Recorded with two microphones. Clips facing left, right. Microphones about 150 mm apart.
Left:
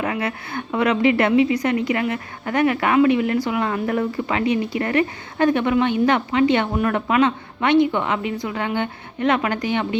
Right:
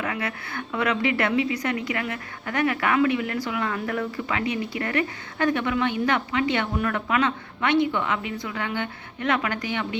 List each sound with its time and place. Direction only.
0.0 s a woman's voice: 25° left (ahead or behind)